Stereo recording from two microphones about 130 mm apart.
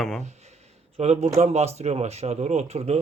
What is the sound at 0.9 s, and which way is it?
Speech, 55° right (ahead or behind).